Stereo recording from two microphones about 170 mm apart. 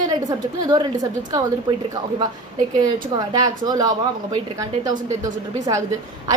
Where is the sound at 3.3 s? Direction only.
25° right (ahead or behind).